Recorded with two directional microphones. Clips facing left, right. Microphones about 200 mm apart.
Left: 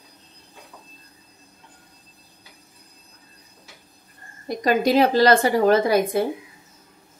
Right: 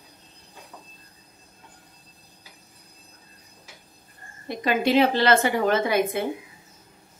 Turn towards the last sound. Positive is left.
turn(degrees=35)  # may be behind; listen again after turning